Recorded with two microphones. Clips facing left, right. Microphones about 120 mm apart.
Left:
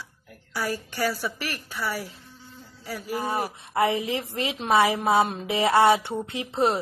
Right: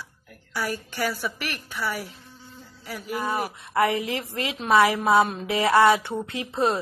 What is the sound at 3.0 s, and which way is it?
Speech, 55° right (ahead or behind).